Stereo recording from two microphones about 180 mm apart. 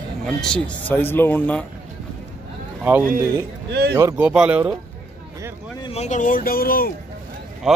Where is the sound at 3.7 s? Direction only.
65° right (ahead or behind).